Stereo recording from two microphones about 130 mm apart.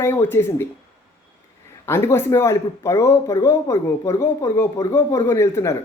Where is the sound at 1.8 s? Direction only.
20° left (ahead or behind).